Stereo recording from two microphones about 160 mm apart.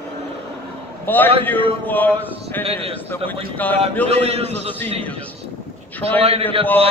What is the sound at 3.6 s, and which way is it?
Speech, 10° left (ahead or behind).